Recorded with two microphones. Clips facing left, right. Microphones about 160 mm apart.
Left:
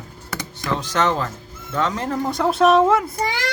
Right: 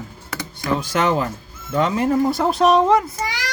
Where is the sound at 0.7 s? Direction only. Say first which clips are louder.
Right 1 dB; 10° right (ahead or behind).